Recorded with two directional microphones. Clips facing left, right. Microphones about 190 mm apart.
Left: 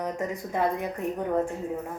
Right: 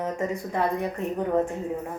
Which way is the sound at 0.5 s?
15° left (ahead or behind).